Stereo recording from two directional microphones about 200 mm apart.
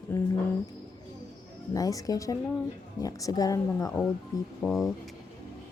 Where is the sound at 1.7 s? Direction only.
15° left (ahead or behind).